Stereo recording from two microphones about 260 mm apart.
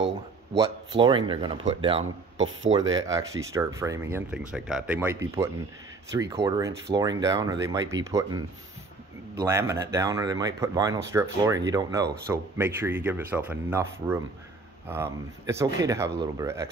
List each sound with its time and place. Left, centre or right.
0.6 s speech: centre
2.3 s speech: right
2.9 s speech: centre